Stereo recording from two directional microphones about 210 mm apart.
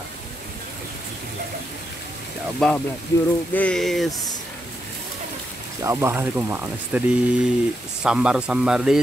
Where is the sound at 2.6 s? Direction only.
Centre (ahead or behind).